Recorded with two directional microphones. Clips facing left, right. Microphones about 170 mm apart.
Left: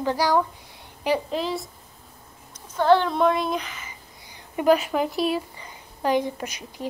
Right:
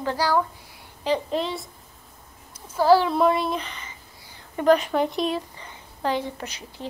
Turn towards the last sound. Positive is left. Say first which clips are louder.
# left 2 dB
turn(degrees=15)  # may be behind; listen again after turning